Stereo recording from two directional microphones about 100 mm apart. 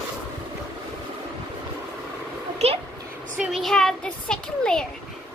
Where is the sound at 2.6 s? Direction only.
90° right.